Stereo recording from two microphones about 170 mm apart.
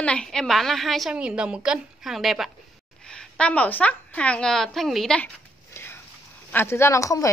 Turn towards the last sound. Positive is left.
turn(degrees=20)  # may be behind; listen again after turning